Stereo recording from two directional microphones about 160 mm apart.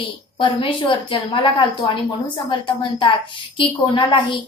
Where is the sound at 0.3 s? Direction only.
30° left (ahead or behind).